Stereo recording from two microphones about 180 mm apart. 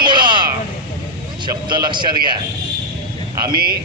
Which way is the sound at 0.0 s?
25° right (ahead or behind).